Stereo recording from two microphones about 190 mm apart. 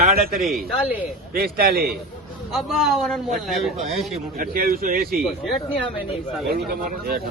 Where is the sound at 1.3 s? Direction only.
50° right (ahead or behind).